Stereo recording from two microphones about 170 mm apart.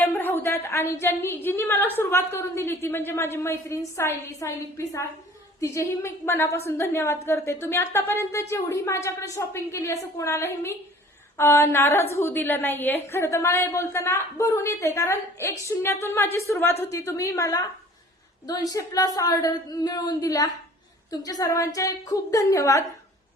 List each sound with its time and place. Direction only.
0.0 s a woman's voice: 10° left (ahead or behind)